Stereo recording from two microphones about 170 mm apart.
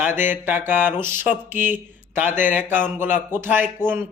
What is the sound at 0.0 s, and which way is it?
Speech, 10° right (ahead or behind).